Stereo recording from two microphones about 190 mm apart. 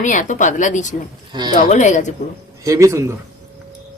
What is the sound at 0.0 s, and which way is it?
Speech, 40° left (ahead or behind).